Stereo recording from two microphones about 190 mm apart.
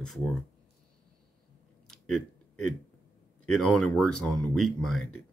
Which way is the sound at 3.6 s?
Centre (ahead or behind).